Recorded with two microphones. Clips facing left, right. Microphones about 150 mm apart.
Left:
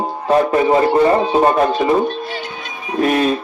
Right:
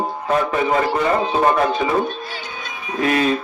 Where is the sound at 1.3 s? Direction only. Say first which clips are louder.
Left 3 dB; 30° left (ahead or behind).